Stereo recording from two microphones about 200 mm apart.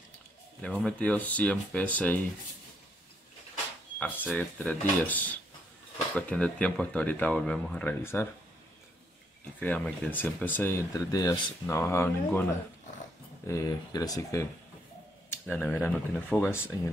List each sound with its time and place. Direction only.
0.6 s speech: 5° left (ahead or behind)
4.0 s speech: 10° left (ahead or behind)
9.6 s speech: 5° left (ahead or behind)
13.5 s speech: 20° left (ahead or behind)
15.4 s speech: 5° left (ahead or behind)